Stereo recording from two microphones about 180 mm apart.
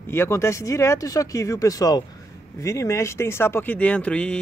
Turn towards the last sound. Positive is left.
turn(degrees=5)  # may be behind; listen again after turning